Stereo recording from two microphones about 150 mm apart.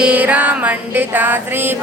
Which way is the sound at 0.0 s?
10° right (ahead or behind).